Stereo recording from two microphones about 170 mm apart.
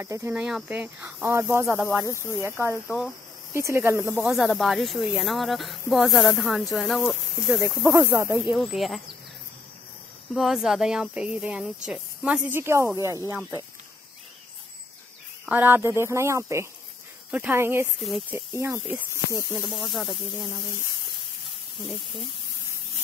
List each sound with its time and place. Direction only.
0.0 s speech: 15° right (ahead or behind)
4.3 s speech: centre (ahead or behind)
7.4 s speech: 10° right (ahead or behind)
8.5 s speech: centre (ahead or behind)
10.3 s speech: centre (ahead or behind)
15.4 s speech: 10° right (ahead or behind)
19.5 s speech: 5° left (ahead or behind)